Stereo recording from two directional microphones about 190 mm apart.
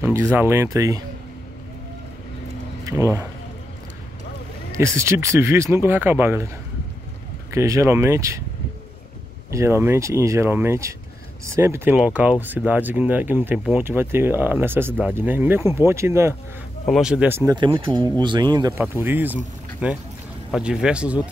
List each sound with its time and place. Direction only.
0.0 s speech: 10° right (ahead or behind)
2.8 s speech: 15° right (ahead or behind)
4.7 s speech: 15° right (ahead or behind)
7.5 s speech: 15° right (ahead or behind)
9.5 s speech: 15° right (ahead or behind)
16.8 s speech: centre (ahead or behind)
17.5 s speech: 25° right (ahead or behind)
18.8 s speech: 10° right (ahead or behind)